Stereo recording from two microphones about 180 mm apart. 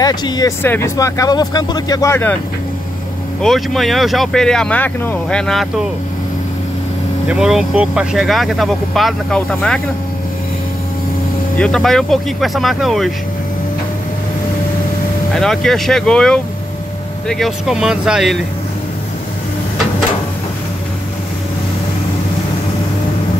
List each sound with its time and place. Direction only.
0.0 s speech: 25° left (ahead or behind)
3.4 s speech: centre (ahead or behind)
7.2 s speech: 5° right (ahead or behind)
11.5 s speech: 5° left (ahead or behind)
15.3 s speech: 5° left (ahead or behind)